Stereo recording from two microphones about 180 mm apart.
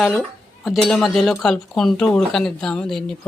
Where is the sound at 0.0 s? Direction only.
Centre (ahead or behind).